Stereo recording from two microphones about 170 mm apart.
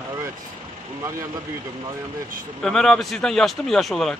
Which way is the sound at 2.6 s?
5° left (ahead or behind).